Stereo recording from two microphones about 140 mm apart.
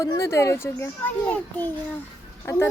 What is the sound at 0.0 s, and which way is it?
A child's voice, 20° left (ahead or behind).